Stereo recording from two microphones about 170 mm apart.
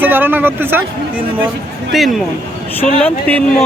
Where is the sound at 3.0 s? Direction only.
10° left (ahead or behind).